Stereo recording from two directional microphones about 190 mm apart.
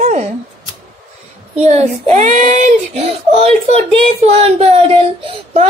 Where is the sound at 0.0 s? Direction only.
40° right (ahead or behind).